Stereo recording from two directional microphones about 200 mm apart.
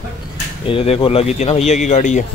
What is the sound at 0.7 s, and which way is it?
Speech, 25° left (ahead or behind).